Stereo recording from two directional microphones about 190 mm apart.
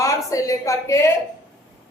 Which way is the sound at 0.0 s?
15° left (ahead or behind).